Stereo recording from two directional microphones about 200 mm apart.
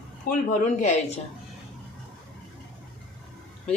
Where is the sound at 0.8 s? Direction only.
35° left (ahead or behind).